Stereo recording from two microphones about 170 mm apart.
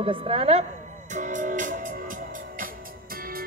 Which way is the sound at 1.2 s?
50° right (ahead or behind).